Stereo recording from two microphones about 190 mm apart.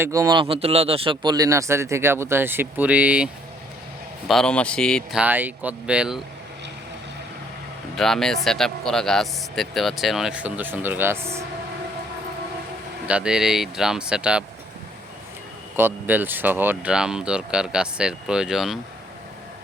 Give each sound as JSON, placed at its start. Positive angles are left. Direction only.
{"t": 0.0, "sound": "speech", "side_deg": -15}
{"t": 4.3, "sound": "speech", "side_deg": 5}
{"t": 5.2, "sound": "speech", "side_deg": -10}
{"t": 7.9, "sound": "speech", "side_deg": 0}
{"t": 13.1, "sound": "speech", "side_deg": -5}
{"t": 15.7, "sound": "speech", "side_deg": -10}